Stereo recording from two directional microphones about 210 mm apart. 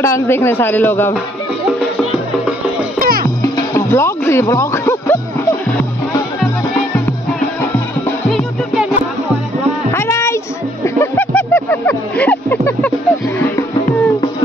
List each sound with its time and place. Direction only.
0.0 s a man's voice: 15° left (ahead or behind)
3.0 s music: 45° right (ahead or behind)
3.5 s music: 15° left (ahead or behind)
8.3 s music: centre (ahead or behind)
9.9 s a sound: 15° left (ahead or behind)